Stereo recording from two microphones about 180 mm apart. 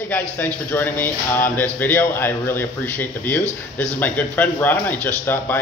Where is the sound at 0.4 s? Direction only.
10° left (ahead or behind).